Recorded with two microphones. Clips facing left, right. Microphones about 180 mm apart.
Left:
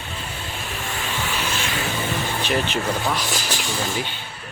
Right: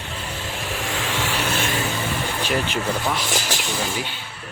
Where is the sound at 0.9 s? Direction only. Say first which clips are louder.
Right 2 dB; 90° right.